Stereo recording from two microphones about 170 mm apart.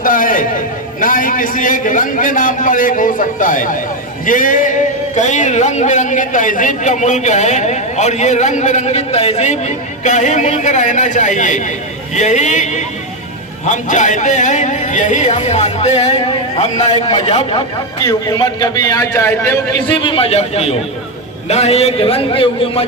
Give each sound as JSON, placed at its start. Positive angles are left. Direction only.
{"t": 0.0, "sound": "a sound", "side_deg": 55}
{"t": 1.0, "sound": "a man's voice", "side_deg": 55}
{"t": 18.0, "sound": "a man's voice", "side_deg": 20}
{"t": 20.0, "sound": "a man's voice", "side_deg": 30}